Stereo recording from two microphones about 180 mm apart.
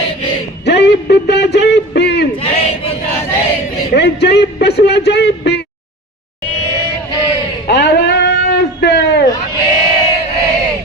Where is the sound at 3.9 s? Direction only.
65° left (ahead or behind).